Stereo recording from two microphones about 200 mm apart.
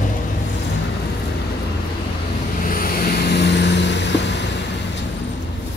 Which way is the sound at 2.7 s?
50° left (ahead or behind).